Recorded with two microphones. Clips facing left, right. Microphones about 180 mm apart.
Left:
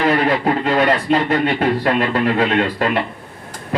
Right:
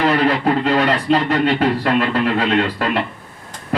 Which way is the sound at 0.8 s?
55° left (ahead or behind).